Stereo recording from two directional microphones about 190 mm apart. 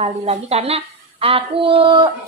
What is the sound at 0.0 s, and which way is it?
A woman's voice, 35° right (ahead or behind).